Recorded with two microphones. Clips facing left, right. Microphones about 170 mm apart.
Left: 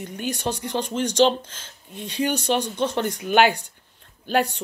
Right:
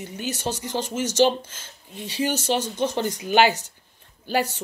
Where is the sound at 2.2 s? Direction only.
60° left (ahead or behind).